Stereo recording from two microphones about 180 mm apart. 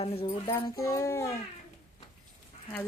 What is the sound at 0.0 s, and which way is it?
Speech, 30° left (ahead or behind).